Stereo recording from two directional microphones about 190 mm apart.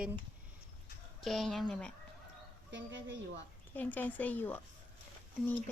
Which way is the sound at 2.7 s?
75° right (ahead or behind).